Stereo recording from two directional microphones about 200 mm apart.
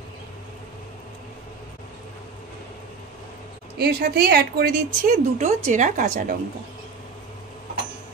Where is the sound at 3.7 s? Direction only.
55° right (ahead or behind).